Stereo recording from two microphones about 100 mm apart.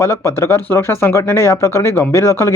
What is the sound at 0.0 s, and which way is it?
Speech, 30° left (ahead or behind).